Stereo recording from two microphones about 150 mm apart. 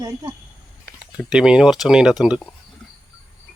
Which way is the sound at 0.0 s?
25° right (ahead or behind).